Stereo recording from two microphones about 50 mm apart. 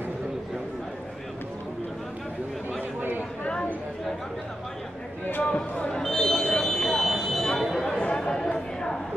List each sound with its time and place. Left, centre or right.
5.4 s a sound: left
6.0 s fire alarm: centre
8.0 s chatter: centre